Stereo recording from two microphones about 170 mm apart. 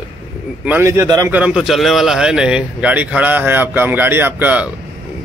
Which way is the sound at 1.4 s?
5° right (ahead or behind).